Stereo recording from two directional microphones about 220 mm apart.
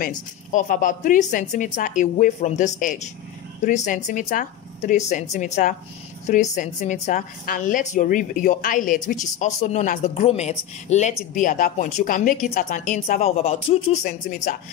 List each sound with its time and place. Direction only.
0.0 s speech: 35° left (ahead or behind)